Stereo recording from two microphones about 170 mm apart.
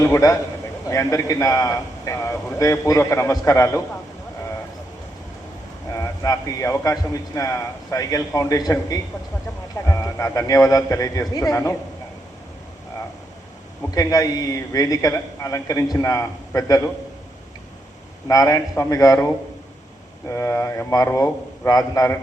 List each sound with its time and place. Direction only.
0.0 s a man's voice: 20° left (ahead or behind)
5.9 s a man's voice: 20° left (ahead or behind)
13.9 s a man's voice: 20° left (ahead or behind)
18.3 s a man's voice: 20° left (ahead or behind)